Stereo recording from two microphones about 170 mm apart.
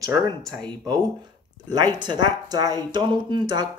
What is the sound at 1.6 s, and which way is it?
Speech, 25° right (ahead or behind).